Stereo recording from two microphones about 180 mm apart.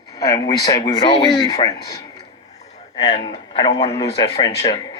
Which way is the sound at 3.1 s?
30° left (ahead or behind).